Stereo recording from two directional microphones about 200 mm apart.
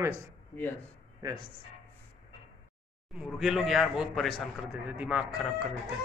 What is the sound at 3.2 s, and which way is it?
Speech, 5° right (ahead or behind).